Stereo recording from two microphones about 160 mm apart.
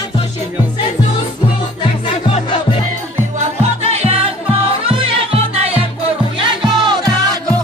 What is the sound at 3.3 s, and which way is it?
Music, 40° right (ahead or behind).